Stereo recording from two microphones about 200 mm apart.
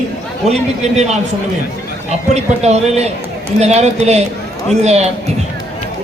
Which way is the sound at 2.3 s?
35° right (ahead or behind).